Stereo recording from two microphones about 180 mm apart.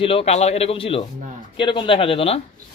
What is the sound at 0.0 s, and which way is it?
A man's voice, 35° left (ahead or behind).